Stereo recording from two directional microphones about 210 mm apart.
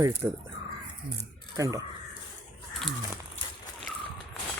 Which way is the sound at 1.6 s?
15° right (ahead or behind).